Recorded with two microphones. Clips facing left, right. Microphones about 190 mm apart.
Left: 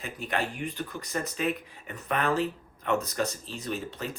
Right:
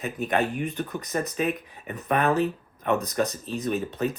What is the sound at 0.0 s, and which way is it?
Speech, 20° right (ahead or behind).